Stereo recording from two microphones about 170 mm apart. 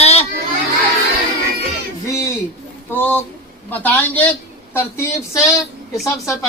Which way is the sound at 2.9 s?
10° left (ahead or behind).